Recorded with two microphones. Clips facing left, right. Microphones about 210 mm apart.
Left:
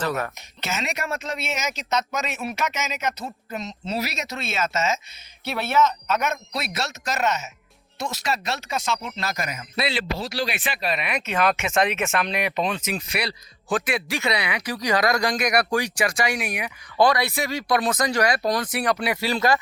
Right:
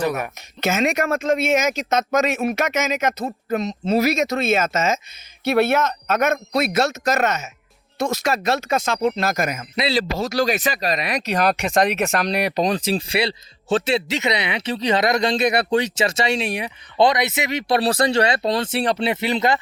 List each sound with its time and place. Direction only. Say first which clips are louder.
0.0 s speech: right 3 dB; 15° right (ahead or behind)
0.6 s speech: right 9 dB; 50° right (ahead or behind); by 19.5 s 20° right (ahead or behind)